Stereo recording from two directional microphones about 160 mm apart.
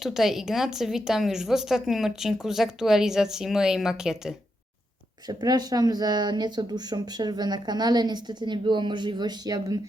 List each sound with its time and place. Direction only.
0.0 s a woman's voice: centre (ahead or behind)
5.3 s speech: 25° right (ahead or behind)